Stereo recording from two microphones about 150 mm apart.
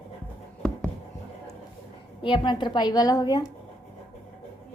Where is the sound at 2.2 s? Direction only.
35° left (ahead or behind).